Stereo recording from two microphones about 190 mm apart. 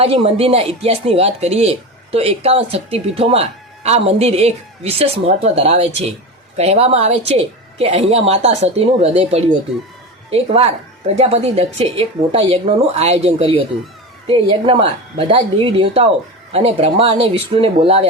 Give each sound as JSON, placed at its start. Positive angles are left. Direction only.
{"t": 0.0, "sound": "a woman's voice", "side_deg": -30}